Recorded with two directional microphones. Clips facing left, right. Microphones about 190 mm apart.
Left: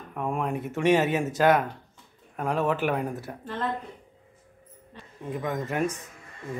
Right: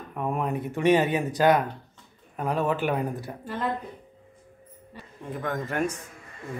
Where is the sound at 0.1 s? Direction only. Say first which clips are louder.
Right 1 dB; 5° right (ahead or behind).